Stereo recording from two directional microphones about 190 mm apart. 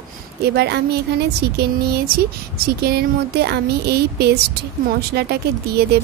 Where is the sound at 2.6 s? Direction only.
55° right (ahead or behind).